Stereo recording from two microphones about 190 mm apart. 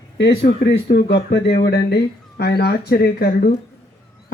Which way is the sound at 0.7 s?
65° left (ahead or behind).